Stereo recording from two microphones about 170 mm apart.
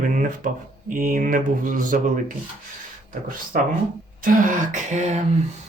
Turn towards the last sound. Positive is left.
turn(degrees=-45)  # may be behind; listen again after turning